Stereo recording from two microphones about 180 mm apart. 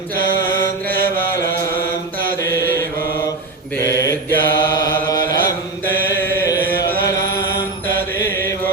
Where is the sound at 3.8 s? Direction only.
15° left (ahead or behind).